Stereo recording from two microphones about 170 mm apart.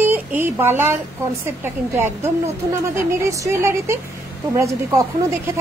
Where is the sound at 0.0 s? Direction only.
10° right (ahead or behind).